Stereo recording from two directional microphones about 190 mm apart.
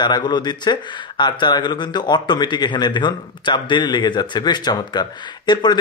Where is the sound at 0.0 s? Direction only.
25° left (ahead or behind).